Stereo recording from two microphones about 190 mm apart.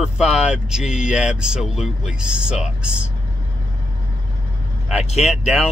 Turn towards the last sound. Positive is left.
turn(degrees=-5)  # may be behind; listen again after turning